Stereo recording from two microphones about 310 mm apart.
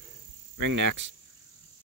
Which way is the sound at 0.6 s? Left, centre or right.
Right.